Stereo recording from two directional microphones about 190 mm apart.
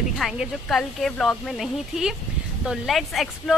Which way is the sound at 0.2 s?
Centre (ahead or behind).